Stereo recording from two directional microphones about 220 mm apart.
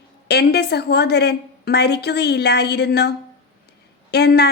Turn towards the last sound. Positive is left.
turn(degrees=50)  # may be behind; listen again after turning